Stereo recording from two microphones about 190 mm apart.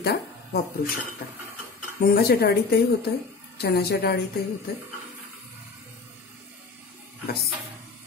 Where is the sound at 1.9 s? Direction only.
55° left (ahead or behind).